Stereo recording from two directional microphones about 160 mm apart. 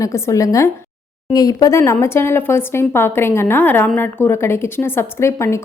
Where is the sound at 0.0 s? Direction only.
20° left (ahead or behind).